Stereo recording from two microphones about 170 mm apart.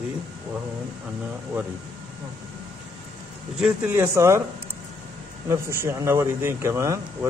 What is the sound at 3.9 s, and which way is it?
Speech, 15° right (ahead or behind).